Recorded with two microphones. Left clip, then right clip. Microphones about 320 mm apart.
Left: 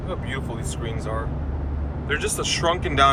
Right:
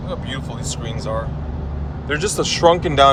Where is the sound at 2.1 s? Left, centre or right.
Centre.